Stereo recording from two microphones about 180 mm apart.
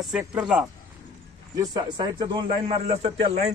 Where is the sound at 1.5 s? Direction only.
20° right (ahead or behind).